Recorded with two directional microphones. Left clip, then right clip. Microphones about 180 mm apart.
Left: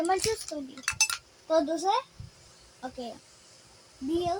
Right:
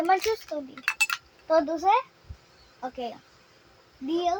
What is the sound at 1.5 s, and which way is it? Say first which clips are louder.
Speech: right 3 dB; 10° right (ahead or behind).